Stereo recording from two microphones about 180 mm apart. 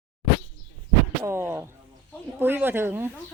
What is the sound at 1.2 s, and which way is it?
Speech, 15° right (ahead or behind).